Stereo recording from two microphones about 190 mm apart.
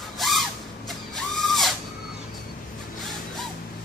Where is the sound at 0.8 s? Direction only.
Centre (ahead or behind).